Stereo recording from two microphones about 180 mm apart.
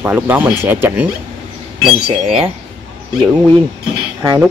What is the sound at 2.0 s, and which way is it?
Speech, 35° right (ahead or behind).